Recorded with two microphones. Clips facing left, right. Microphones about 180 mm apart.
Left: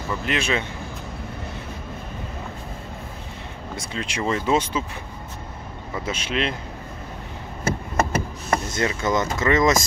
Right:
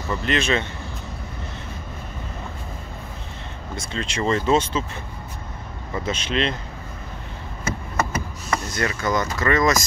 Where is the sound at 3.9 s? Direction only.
10° left (ahead or behind).